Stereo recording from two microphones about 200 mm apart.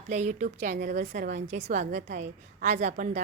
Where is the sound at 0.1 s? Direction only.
35° right (ahead or behind).